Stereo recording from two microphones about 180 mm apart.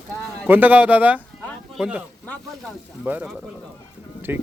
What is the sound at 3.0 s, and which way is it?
Speech, 5° right (ahead or behind).